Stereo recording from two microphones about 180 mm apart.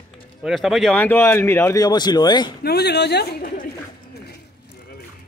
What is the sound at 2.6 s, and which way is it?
Speech, 65° left (ahead or behind).